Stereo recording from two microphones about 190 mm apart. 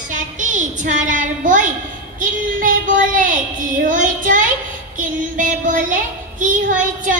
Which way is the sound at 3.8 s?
45° right (ahead or behind).